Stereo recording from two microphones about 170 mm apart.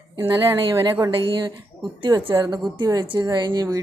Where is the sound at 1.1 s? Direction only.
30° right (ahead or behind).